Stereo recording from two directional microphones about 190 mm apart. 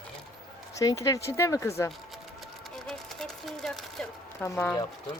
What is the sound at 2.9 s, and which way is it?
Music, centre (ahead or behind).